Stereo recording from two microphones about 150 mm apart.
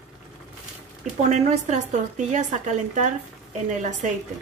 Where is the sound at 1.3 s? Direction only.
50° right (ahead or behind).